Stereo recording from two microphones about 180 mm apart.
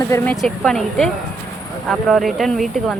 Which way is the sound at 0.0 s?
15° left (ahead or behind).